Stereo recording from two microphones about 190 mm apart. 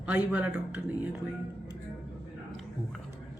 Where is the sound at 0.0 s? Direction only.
5° right (ahead or behind).